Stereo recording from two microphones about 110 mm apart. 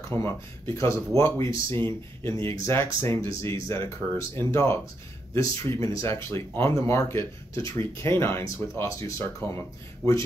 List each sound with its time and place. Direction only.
0.1 s speech: 45° right (ahead or behind)
0.7 s speech: 25° left (ahead or behind)